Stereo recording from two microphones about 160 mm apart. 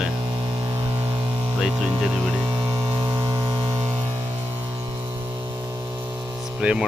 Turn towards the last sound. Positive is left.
turn(degrees=-5)  # may be behind; listen again after turning